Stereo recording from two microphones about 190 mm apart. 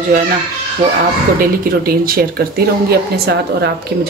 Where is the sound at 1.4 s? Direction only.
50° right (ahead or behind).